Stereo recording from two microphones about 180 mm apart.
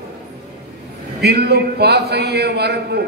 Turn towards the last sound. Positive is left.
turn(degrees=-65)  # may be behind; listen again after turning